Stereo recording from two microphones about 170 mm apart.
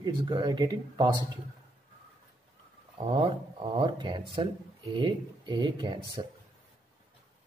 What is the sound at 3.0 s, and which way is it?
Speech, 30° right (ahead or behind).